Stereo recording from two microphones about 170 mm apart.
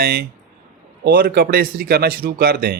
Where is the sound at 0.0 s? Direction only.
65° right (ahead or behind).